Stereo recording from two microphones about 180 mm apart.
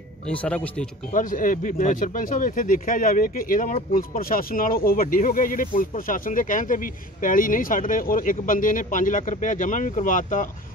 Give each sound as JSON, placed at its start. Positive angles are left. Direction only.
{"t": 0.3, "sound": "speech", "side_deg": 5}
{"t": 1.1, "sound": "speech", "side_deg": 50}